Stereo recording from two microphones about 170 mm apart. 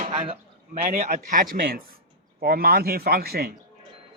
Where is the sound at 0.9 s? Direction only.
50° right (ahead or behind); by 3.5 s 65° right (ahead or behind).